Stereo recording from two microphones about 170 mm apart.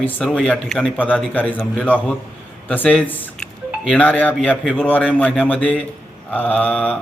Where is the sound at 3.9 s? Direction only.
10° left (ahead or behind).